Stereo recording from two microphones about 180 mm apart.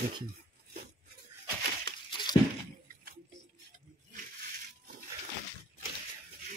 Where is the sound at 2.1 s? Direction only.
25° left (ahead or behind).